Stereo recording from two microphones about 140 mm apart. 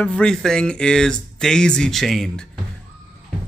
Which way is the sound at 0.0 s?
5° left (ahead or behind).